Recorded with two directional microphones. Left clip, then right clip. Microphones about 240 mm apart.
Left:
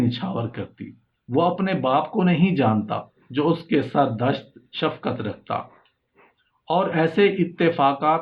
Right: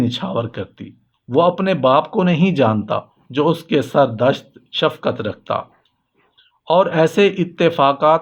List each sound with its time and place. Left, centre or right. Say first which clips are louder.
0.1 s speech: right 6 dB; right
6.7 s speech: right 7 dB; right